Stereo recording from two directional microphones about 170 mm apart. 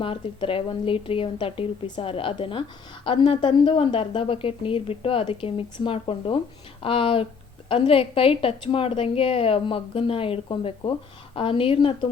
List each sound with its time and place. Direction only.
0.0 s speech: 30° left (ahead or behind)